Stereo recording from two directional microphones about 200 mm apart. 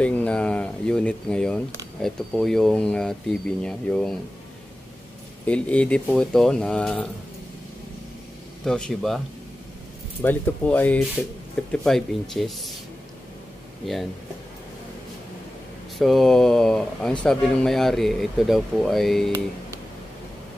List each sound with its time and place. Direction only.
0.0 s speech: 5° left (ahead or behind)
5.5 s speech: 5° left (ahead or behind)
8.6 s speech: 5° left (ahead or behind)
10.2 s speech: 10° left (ahead or behind)
16.0 s speech: centre (ahead or behind)